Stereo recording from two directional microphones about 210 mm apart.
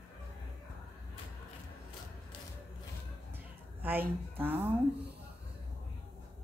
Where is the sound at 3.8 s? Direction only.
10° right (ahead or behind).